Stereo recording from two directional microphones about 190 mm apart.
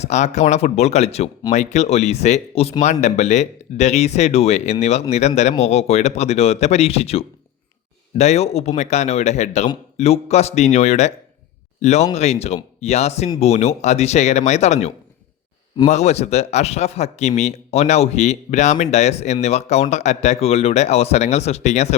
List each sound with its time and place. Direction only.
0.0 s a man's voice: 35° left (ahead or behind)